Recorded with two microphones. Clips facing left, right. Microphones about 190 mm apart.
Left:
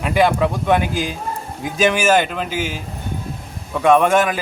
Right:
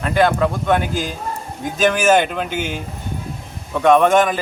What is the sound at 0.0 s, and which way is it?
A man's voice, 10° left (ahead or behind).